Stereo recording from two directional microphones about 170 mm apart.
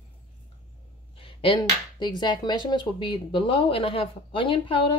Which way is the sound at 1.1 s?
30° left (ahead or behind).